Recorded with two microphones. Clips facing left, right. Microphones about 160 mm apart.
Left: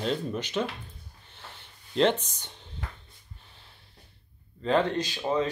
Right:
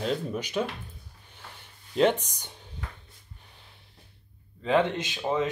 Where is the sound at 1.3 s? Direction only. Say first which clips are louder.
Even; 10° right (ahead or behind).